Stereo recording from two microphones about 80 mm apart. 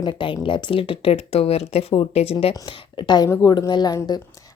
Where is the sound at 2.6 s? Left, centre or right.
Left.